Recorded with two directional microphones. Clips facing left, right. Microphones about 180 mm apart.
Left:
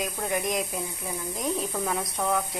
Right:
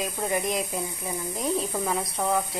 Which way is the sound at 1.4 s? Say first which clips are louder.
Right 1 dB; 5° right (ahead or behind).